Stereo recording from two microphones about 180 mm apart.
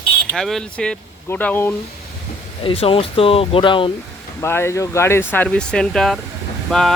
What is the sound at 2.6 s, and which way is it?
Speech, 30° left (ahead or behind).